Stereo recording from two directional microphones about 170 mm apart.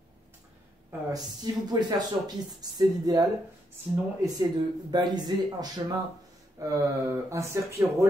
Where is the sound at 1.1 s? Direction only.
25° right (ahead or behind).